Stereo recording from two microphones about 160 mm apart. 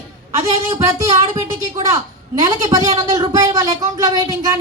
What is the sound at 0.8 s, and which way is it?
Speech, 20° right (ahead or behind).